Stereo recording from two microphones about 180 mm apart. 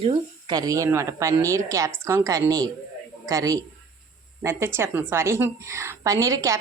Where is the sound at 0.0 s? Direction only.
25° right (ahead or behind).